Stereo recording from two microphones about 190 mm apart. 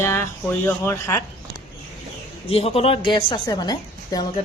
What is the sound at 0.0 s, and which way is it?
Speech, 10° left (ahead or behind).